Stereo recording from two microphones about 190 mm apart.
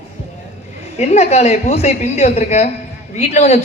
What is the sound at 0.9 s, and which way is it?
A man's voice, 35° left (ahead or behind).